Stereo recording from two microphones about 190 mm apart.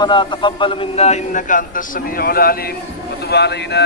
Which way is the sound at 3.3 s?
60° left (ahead or behind).